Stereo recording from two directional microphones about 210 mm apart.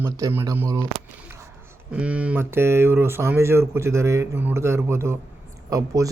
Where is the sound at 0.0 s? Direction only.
10° right (ahead or behind).